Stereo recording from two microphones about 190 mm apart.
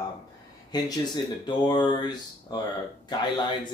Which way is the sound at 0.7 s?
20° left (ahead or behind).